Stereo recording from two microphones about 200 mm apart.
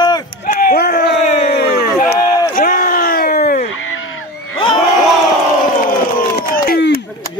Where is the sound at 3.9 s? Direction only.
90° left.